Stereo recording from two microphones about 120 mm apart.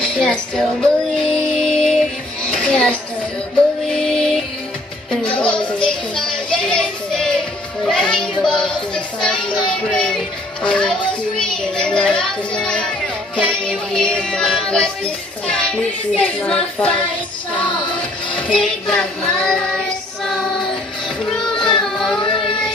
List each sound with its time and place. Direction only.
0.0 s child singing: 5° left (ahead or behind)
2.4 s a sound: 10° left (ahead or behind)
3.9 s music: 5° left (ahead or behind)
5.1 s a sound: 10° left (ahead or behind)
9.8 s music: 5° left (ahead or behind)
13.4 s child singing: 5° left (ahead or behind)
17.7 s music: 10° left (ahead or behind)
21.3 s child singing: 5° left (ahead or behind)
21.8 s a sound: 5° left (ahead or behind)
22.2 s music: 40° left (ahead or behind)